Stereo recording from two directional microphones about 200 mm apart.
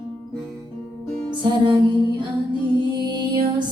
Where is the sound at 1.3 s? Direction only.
25° right (ahead or behind).